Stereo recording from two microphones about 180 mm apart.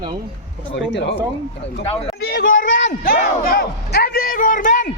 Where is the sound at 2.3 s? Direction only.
60° left (ahead or behind).